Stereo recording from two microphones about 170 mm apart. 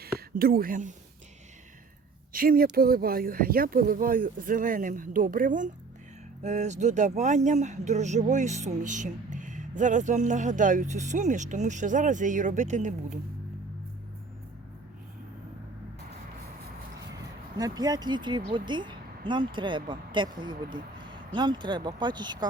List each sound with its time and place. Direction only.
0.0 s speech: 60° right (ahead or behind)
2.3 s speech: 60° right (ahead or behind)
17.6 s speech: 20° right (ahead or behind)